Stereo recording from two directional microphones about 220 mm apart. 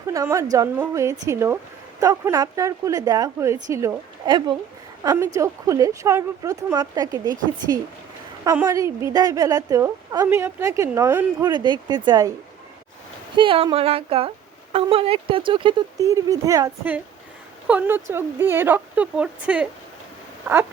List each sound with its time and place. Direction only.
0.1 s a woman's voice: 15° right (ahead or behind)
13.3 s a woman's voice: 25° right (ahead or behind); by 19.6 s 5° right (ahead or behind)